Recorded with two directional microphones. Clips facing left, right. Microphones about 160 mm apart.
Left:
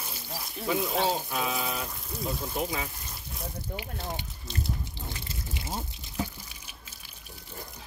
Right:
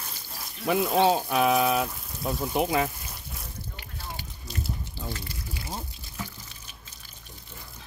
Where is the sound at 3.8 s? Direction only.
20° left (ahead or behind).